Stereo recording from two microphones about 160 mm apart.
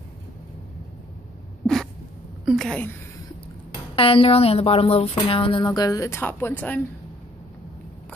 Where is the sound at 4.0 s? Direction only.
35° left (ahead or behind); by 6.8 s 10° left (ahead or behind).